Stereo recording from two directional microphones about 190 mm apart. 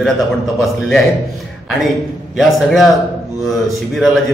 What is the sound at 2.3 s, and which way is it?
A man's voice, centre (ahead or behind).